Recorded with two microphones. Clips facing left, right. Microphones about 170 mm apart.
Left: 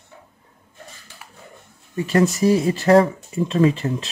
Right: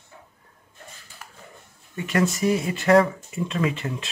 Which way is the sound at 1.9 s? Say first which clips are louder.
Left 5 dB; 35° left (ahead or behind).